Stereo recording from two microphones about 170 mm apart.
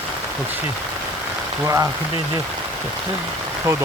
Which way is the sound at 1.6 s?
20° right (ahead or behind).